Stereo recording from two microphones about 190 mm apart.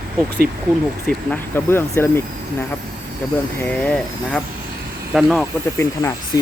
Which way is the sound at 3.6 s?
5° left (ahead or behind).